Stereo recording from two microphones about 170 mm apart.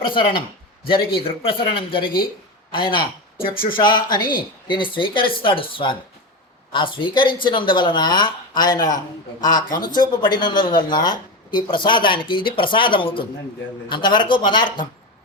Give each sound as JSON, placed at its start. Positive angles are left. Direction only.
{"t": 0.1, "sound": "speech", "side_deg": 30}